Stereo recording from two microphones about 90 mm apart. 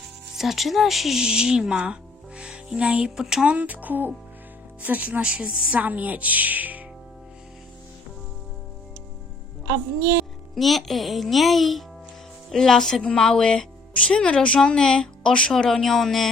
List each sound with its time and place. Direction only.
0.3 s a woman's voice: centre (ahead or behind); by 6.8 s 20° right (ahead or behind)
9.6 s a woman's voice: 35° right (ahead or behind)
10.5 s a child's voice: centre (ahead or behind)